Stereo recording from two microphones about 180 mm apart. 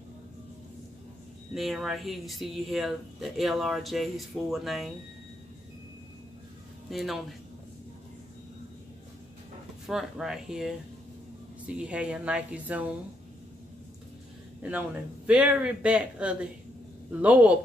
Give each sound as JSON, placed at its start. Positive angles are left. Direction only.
{"t": 1.5, "sound": "speech", "side_deg": 0}
{"t": 6.9, "sound": "speech", "side_deg": 0}
{"t": 9.8, "sound": "speech", "side_deg": 0}
{"t": 14.6, "sound": "speech", "side_deg": -5}